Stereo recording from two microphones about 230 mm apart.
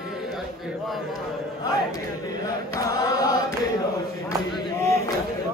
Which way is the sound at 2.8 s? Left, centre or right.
Centre.